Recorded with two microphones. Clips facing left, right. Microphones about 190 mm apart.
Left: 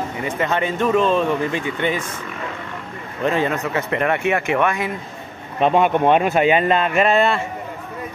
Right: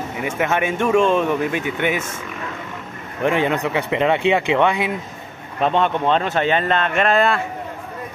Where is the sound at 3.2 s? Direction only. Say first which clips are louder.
Right 1 dB; 15° right (ahead or behind).